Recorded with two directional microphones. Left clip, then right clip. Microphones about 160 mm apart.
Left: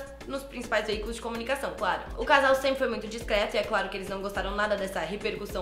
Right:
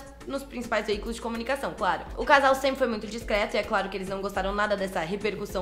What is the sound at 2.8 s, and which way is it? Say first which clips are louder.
A woman's voice: right 1 dB; 30° right (ahead or behind).